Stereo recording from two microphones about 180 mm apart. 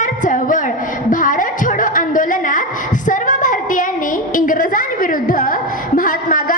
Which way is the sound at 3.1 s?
45° left (ahead or behind).